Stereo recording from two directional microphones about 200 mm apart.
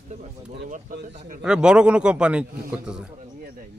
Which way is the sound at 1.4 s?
5° right (ahead or behind).